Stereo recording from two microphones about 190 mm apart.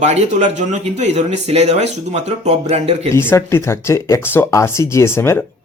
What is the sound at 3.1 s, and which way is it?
Speech, 15° left (ahead or behind).